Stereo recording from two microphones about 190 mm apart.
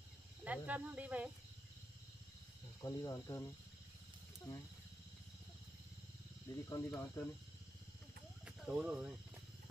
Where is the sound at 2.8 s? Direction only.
20° left (ahead or behind).